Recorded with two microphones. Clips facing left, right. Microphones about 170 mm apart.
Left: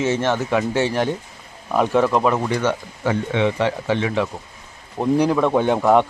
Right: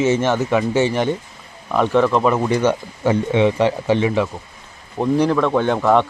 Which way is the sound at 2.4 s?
20° right (ahead or behind).